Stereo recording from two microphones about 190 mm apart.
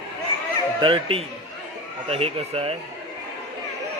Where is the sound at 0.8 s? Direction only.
25° right (ahead or behind).